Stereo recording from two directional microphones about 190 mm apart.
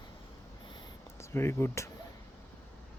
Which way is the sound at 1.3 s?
15° left (ahead or behind).